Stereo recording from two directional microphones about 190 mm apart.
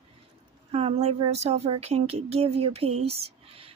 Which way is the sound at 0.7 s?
30° right (ahead or behind).